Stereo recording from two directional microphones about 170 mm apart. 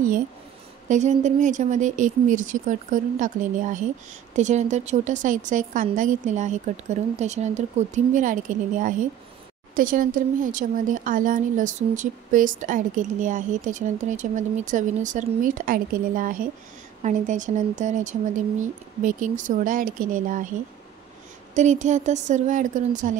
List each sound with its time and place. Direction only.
0.8 s a woman's voice: 45° right (ahead or behind)
21.5 s a woman's voice: 45° right (ahead or behind)